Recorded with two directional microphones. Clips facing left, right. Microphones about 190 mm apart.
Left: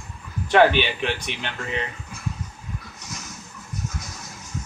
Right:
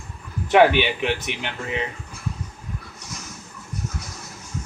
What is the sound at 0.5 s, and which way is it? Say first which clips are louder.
Speech: right 1 dB; 15° right (ahead or behind).